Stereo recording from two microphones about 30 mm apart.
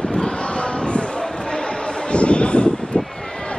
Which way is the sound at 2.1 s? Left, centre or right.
Left.